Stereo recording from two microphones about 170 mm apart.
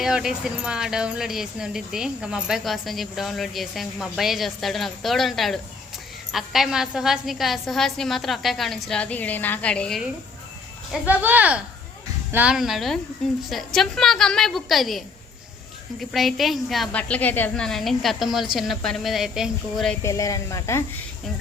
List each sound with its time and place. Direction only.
0.0 s speech: 5° right (ahead or behind)
11.0 s speech: 10° right (ahead or behind)
20.0 s speech: 20° left (ahead or behind)